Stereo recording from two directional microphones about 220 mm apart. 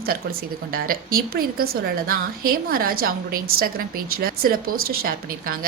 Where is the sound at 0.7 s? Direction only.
40° right (ahead or behind).